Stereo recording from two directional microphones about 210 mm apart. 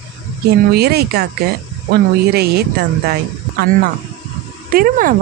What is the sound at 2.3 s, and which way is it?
Speech, 50° right (ahead or behind).